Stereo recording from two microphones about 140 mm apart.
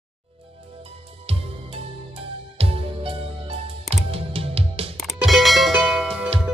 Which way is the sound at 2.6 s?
40° right (ahead or behind).